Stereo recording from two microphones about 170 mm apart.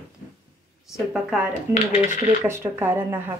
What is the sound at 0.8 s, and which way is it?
A woman's voice, 5° right (ahead or behind).